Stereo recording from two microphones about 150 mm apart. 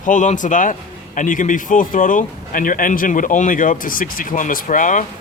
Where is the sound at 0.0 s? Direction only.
60° left (ahead or behind).